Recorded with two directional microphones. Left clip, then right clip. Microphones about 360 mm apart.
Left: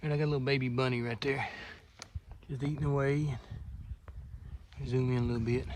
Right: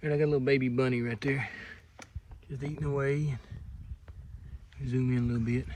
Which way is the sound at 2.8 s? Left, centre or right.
Centre.